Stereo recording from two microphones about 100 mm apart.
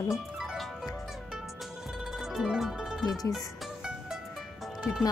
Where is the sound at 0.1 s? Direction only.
5° right (ahead or behind).